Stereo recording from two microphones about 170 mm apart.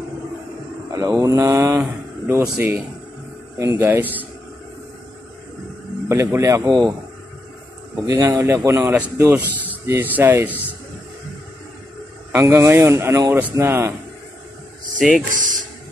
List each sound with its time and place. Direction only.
0.9 s a man's voice: 20° right (ahead or behind)
6.0 s a man's voice: 15° right (ahead or behind)
8.1 s a man's voice: 20° right (ahead or behind)
12.3 s a man's voice: 15° right (ahead or behind)
15.0 s speech: centre (ahead or behind)